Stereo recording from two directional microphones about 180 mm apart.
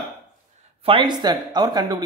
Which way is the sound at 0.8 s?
30° right (ahead or behind).